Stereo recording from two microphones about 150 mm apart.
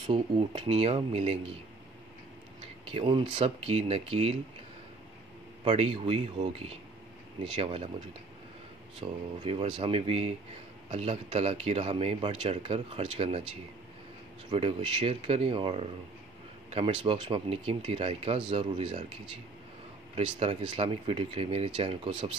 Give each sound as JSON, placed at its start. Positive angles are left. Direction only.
{"t": 0.0, "sound": "speech", "side_deg": -35}
{"t": 2.8, "sound": "speech", "side_deg": -40}
{"t": 5.6, "sound": "speech", "side_deg": -40}
{"t": 9.0, "sound": "speech", "side_deg": -35}
{"t": 14.5, "sound": "speech", "side_deg": -35}
{"t": 20.2, "sound": "speech", "side_deg": -40}